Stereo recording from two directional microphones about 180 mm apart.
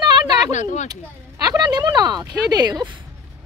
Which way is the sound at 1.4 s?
20° right (ahead or behind).